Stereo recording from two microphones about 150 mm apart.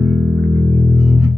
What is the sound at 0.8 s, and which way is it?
Music, 10° right (ahead or behind).